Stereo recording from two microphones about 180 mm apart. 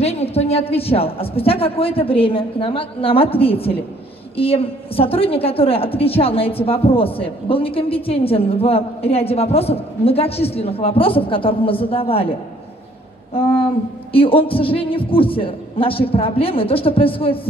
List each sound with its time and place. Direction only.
0.0 s a woman's voice: 35° left (ahead or behind)